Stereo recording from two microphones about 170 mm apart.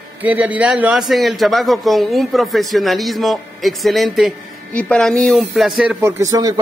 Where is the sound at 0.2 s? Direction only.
10° right (ahead or behind).